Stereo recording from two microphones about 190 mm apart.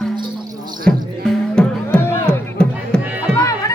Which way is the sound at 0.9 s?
5° left (ahead or behind).